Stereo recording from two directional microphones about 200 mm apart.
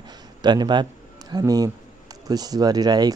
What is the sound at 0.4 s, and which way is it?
Speech, 20° right (ahead or behind).